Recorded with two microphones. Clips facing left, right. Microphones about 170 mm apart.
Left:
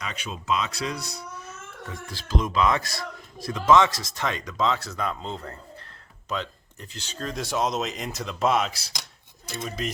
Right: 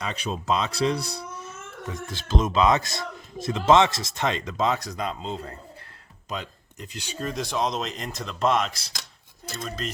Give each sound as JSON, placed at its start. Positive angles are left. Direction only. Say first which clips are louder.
{"t": 0.0, "sound": "speech", "louder": "right 5 dB", "side_deg": -35}
{"t": 1.9, "sound": "a man's voice", "louder": "right 2 dB", "side_deg": -20}